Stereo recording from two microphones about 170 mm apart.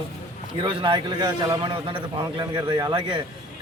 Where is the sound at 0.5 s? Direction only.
30° right (ahead or behind).